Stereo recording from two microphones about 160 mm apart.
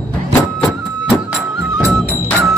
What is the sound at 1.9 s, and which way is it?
Music, 10° left (ahead or behind).